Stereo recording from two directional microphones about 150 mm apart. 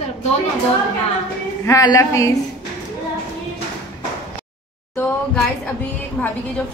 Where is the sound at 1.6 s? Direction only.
20° left (ahead or behind).